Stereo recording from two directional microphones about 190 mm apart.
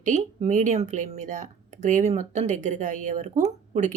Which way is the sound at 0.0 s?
40° right (ahead or behind).